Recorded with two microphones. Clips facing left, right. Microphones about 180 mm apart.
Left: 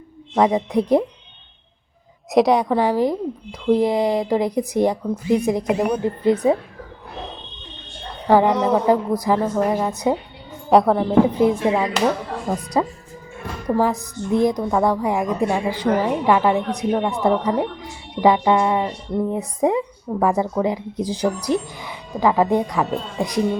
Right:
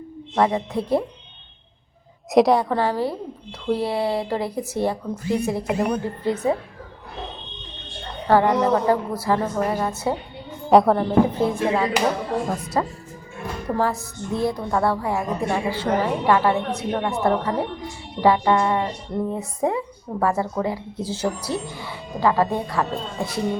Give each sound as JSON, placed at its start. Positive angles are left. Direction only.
{"t": 0.3, "sound": "speech", "side_deg": 15}
{"t": 2.3, "sound": "speech", "side_deg": 0}
{"t": 2.6, "sound": "speech", "side_deg": 15}
{"t": 8.3, "sound": "speech", "side_deg": 15}
{"t": 10.7, "sound": "speech", "side_deg": 0}
{"t": 11.3, "sound": "speech", "side_deg": 15}